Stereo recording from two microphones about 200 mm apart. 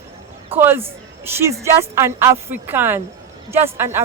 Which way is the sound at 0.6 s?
10° right (ahead or behind).